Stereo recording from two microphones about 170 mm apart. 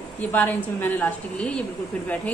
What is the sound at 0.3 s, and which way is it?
A woman's voice, 10° left (ahead or behind).